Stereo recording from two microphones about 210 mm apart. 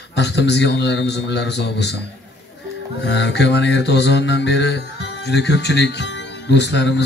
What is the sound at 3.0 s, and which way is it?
Mantra, 55° left (ahead or behind).